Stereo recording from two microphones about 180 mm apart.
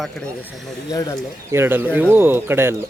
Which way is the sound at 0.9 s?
20° left (ahead or behind).